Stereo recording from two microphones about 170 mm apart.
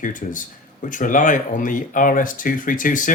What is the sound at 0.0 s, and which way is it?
Speech, 50° left (ahead or behind).